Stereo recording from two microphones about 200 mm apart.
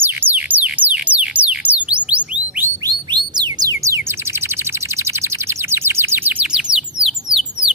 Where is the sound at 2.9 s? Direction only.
20° right (ahead or behind).